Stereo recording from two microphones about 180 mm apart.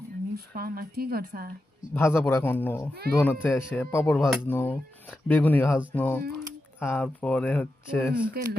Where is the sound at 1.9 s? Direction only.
10° left (ahead or behind).